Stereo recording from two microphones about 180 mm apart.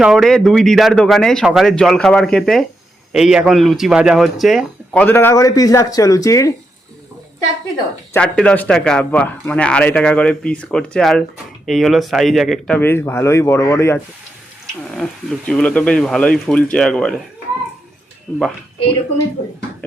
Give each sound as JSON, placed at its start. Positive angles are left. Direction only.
{"t": 0.0, "sound": "a man's voice", "side_deg": 0}
{"t": 5.0, "sound": "a man's voice", "side_deg": 10}
{"t": 8.1, "sound": "a man's voice", "side_deg": 5}
{"t": 14.8, "sound": "a man's voice", "side_deg": 0}
{"t": 18.3, "sound": "a man's voice", "side_deg": 0}